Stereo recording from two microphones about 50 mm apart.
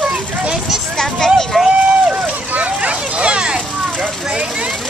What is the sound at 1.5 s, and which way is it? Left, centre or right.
Run, centre.